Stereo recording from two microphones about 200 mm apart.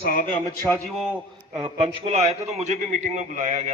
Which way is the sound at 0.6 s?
10° left (ahead or behind).